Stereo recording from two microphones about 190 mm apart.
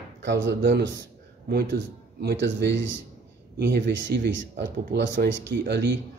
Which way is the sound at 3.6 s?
65° right (ahead or behind).